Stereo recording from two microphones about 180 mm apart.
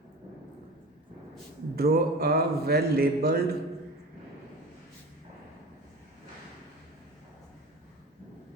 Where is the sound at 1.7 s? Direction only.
60° right (ahead or behind).